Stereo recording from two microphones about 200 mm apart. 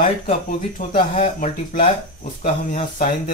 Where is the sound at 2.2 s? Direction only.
40° left (ahead or behind).